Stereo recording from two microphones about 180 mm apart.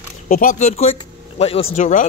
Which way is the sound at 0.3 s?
50° left (ahead or behind).